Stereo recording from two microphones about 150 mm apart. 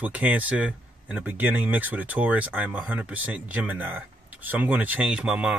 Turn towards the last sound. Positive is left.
turn(degrees=-5)  # may be behind; listen again after turning